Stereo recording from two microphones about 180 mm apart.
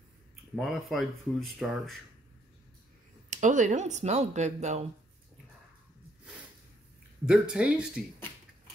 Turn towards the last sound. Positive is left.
turn(degrees=-5)  # may be behind; listen again after turning